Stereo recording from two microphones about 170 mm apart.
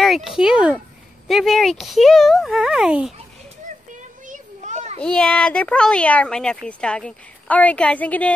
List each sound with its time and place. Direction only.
0.0 s speech: centre (ahead or behind)
4.3 s children playing: 45° right (ahead or behind)
5.0 s speech: 5° left (ahead or behind)